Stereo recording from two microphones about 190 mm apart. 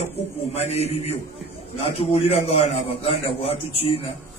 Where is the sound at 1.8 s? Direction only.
30° left (ahead or behind).